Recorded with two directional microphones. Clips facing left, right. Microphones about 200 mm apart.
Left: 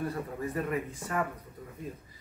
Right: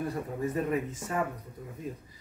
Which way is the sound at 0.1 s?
20° right (ahead or behind).